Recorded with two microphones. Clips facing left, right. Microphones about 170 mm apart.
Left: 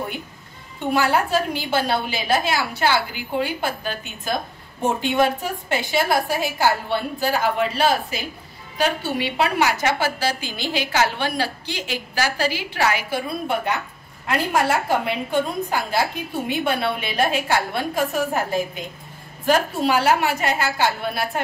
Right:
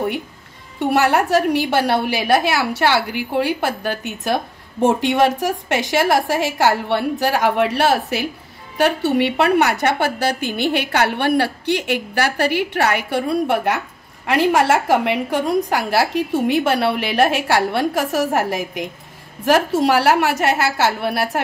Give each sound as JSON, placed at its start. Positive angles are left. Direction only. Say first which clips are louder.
{"t": 0.8, "sound": "a woman's voice", "louder": "right 4 dB", "side_deg": -75}
{"t": 14.2, "sound": "a woman's voice", "louder": "right 5 dB", "side_deg": -85}